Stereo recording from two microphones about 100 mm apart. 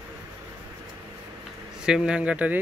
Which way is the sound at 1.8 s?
5° right (ahead or behind).